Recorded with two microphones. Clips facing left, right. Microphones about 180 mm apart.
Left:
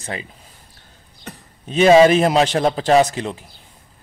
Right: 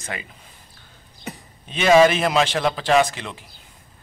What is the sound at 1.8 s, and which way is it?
A man's voice, 35° left (ahead or behind).